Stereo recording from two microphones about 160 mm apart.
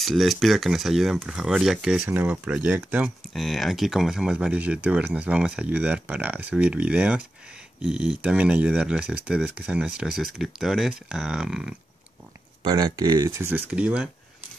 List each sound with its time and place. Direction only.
0.0 s speech: centre (ahead or behind)
12.6 s speech: 25° right (ahead or behind); by 14.0 s 5° right (ahead or behind)